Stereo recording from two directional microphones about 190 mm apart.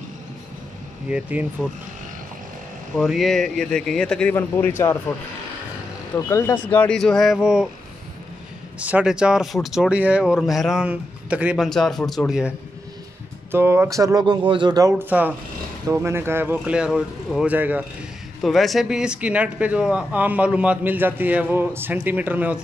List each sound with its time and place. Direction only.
1.1 s speech: 5° right (ahead or behind)
3.0 s speech: centre (ahead or behind)
6.1 s speech: 15° left (ahead or behind); by 7.6 s 5° right (ahead or behind)
8.7 s speech: 5° right (ahead or behind)